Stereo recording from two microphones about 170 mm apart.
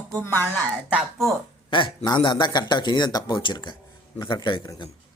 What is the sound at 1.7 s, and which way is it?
Mantra, 30° left (ahead or behind).